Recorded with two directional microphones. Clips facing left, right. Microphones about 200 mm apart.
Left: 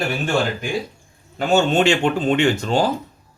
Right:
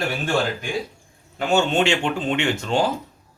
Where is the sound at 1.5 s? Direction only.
40° left (ahead or behind).